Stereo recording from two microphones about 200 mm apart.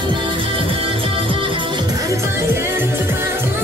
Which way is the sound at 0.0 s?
25° right (ahead or behind).